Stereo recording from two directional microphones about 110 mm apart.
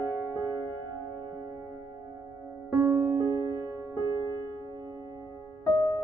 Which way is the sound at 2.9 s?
25° right (ahead or behind).